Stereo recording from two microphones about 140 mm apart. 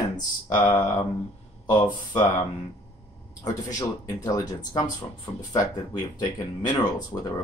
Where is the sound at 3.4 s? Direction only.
25° left (ahead or behind).